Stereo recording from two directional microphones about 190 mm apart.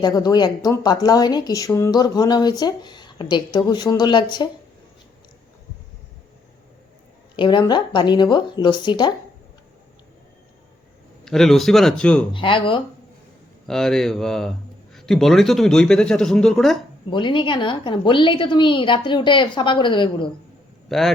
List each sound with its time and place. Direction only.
0.0 s speech: 20° left (ahead or behind)
7.3 s speech: 25° left (ahead or behind)
11.3 s speech: centre (ahead or behind)
12.3 s speech: 25° left (ahead or behind)
13.7 s speech: centre (ahead or behind)
17.1 s speech: 25° left (ahead or behind)
20.9 s speech: centre (ahead or behind)